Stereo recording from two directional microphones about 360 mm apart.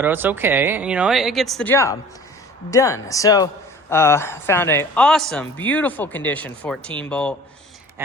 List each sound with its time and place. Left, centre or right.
0.0 s speech: centre